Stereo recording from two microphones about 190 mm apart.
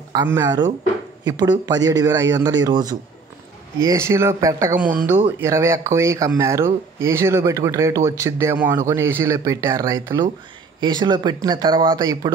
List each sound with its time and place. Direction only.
0.1 s speech: 15° right (ahead or behind)